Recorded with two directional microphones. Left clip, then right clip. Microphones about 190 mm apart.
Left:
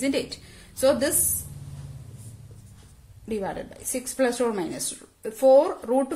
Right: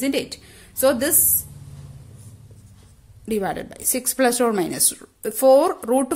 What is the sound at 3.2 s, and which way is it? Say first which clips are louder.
A woman's voice: right 6 dB; 40° right (ahead or behind).